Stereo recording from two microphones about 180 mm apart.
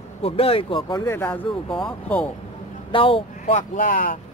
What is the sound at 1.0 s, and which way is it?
Speech, 15° left (ahead or behind).